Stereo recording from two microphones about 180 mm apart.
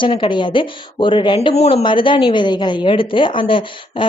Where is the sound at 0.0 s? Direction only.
25° left (ahead or behind).